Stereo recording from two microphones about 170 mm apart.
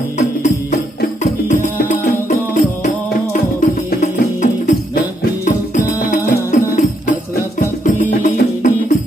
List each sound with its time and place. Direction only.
0.4 s music: 45° left (ahead or behind)